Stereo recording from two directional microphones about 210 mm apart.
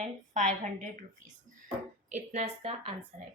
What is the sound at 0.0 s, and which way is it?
Speech, 35° right (ahead or behind).